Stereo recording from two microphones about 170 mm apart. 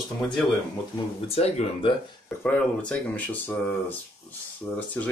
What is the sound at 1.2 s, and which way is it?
Speech, 35° left (ahead or behind).